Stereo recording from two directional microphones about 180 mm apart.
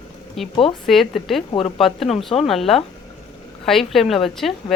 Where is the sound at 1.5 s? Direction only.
30° left (ahead or behind).